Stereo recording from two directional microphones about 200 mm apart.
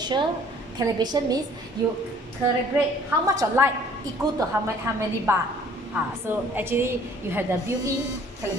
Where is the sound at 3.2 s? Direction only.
15° right (ahead or behind).